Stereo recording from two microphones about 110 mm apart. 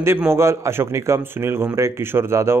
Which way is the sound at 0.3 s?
25° right (ahead or behind).